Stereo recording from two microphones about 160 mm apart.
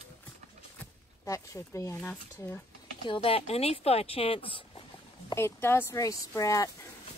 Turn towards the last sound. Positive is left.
turn(degrees=20)  # may be behind; listen again after turning